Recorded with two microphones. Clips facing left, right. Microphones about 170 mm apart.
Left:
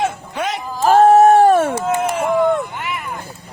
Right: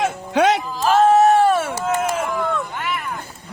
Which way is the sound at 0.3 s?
85° right.